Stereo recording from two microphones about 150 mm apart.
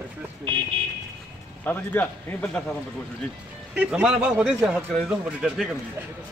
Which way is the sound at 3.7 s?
10° right (ahead or behind).